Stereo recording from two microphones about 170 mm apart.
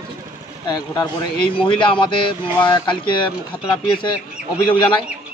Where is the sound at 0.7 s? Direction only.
25° left (ahead or behind).